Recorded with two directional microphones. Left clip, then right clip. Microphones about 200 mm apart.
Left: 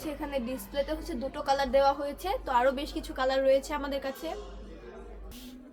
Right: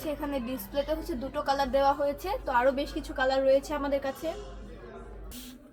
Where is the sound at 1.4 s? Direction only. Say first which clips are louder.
Left 1 dB; 15° left (ahead or behind).